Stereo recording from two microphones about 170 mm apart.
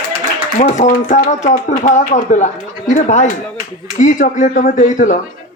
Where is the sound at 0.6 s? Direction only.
45° left (ahead or behind).